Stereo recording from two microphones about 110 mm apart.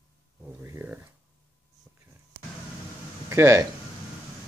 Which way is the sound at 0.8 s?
15° right (ahead or behind).